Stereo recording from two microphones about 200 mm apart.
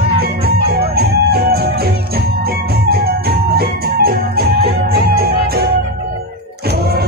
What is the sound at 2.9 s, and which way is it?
Music, 50° right (ahead or behind).